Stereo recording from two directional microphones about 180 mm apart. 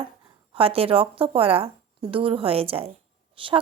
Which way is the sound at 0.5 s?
30° right (ahead or behind).